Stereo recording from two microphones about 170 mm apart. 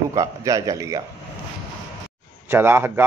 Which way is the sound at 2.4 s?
15° right (ahead or behind).